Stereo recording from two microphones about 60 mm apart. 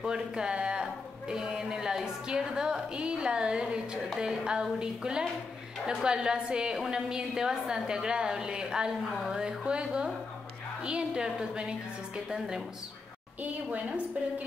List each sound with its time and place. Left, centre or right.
0.0 s a woman's voice: centre
13.4 s a woman's voice: right